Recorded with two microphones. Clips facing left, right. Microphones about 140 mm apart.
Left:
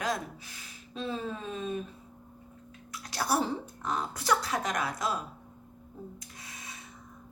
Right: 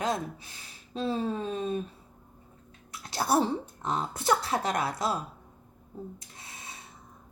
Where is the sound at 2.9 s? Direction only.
25° right (ahead or behind).